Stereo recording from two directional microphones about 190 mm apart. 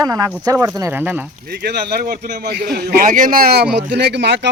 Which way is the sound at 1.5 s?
55° right (ahead or behind).